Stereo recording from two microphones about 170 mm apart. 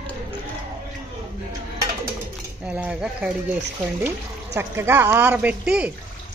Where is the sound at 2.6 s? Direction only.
5° right (ahead or behind).